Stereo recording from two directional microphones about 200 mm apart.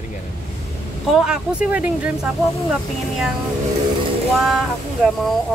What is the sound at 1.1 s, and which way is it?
Speech, 5° right (ahead or behind).